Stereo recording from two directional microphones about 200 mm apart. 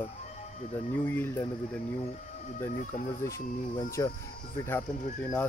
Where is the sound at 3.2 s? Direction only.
15° left (ahead or behind).